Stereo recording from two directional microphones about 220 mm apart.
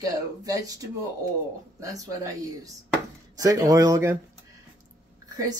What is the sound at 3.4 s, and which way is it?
Speech, 15° right (ahead or behind).